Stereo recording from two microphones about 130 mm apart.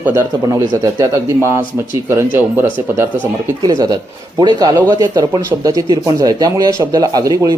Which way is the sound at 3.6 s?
30° right (ahead or behind).